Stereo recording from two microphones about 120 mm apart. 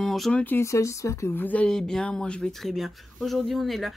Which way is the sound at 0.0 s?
5° left (ahead or behind).